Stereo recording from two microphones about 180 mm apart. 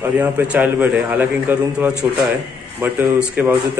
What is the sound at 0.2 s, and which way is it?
A man's voice, 10° right (ahead or behind).